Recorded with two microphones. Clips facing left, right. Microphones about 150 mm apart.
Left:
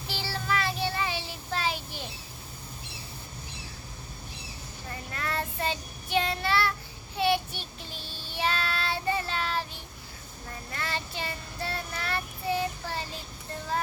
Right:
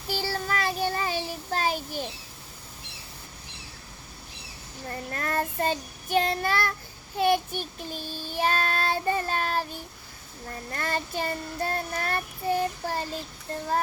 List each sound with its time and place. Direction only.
0.1 s child singing: 45° right (ahead or behind)
4.9 s child singing: 45° right (ahead or behind)